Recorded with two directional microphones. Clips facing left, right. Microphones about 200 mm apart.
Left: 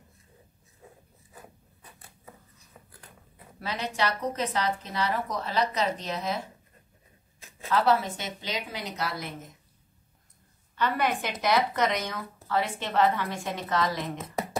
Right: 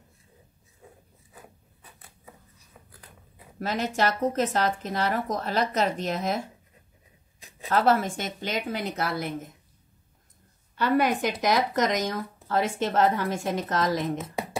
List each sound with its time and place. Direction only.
3.5 s speech: 45° right (ahead or behind)
7.3 s a sound: 15° right (ahead or behind)
7.6 s speech: 45° right (ahead or behind)
10.8 s speech: 40° right (ahead or behind)